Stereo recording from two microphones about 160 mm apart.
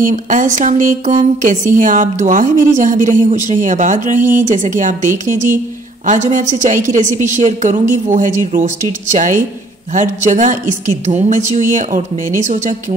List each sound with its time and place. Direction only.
0.0 s speech: 55° right (ahead or behind)